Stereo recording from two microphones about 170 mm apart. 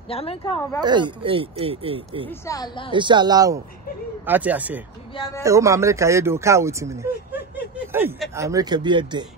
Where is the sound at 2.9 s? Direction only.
25° right (ahead or behind).